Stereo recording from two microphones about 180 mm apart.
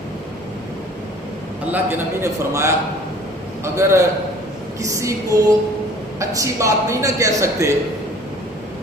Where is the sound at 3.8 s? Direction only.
15° right (ahead or behind).